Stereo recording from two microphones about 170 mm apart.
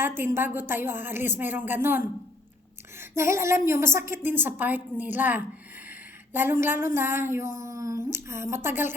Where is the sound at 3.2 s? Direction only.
15° right (ahead or behind).